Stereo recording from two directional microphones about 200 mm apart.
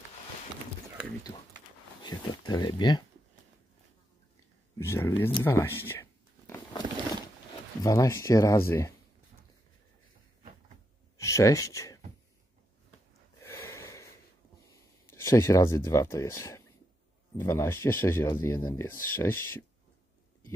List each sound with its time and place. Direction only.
2.0 s speech: 20° left (ahead or behind)
4.7 s speech: 15° left (ahead or behind)
5.3 s a sound: 15° left (ahead or behind)
7.8 s speech: 15° left (ahead or behind)
11.1 s speech: 15° left (ahead or behind)
13.4 s gasp: 15° left (ahead or behind)
14.7 s speech: 15° left (ahead or behind)